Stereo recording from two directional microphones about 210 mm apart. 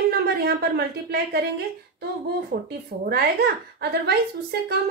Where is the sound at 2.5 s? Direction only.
50° right (ahead or behind).